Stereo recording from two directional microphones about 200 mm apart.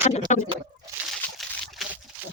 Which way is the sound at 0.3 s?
35° left (ahead or behind).